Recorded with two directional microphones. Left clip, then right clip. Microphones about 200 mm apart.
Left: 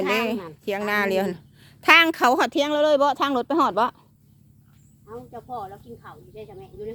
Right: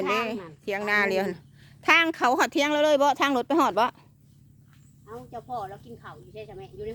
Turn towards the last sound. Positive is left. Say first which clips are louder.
# left 1 dB
turn(degrees=-50)  # may be behind; listen again after turning